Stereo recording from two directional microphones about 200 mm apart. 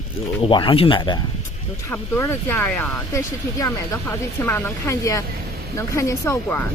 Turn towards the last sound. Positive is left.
turn(degrees=15)  # may be behind; listen again after turning